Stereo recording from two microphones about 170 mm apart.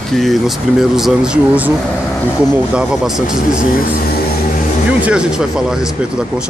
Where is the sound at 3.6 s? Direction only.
55° left (ahead or behind).